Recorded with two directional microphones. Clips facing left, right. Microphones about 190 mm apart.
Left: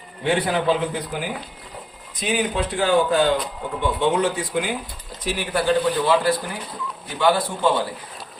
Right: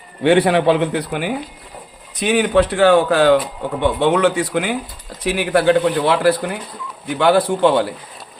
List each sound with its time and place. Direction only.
0.2 s a man's voice: 70° right (ahead or behind)